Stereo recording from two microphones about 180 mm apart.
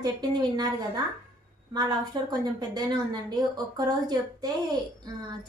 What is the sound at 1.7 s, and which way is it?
A woman's voice, 25° right (ahead or behind).